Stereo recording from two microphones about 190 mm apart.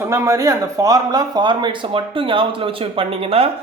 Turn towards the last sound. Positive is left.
turn(degrees=-30)  # may be behind; listen again after turning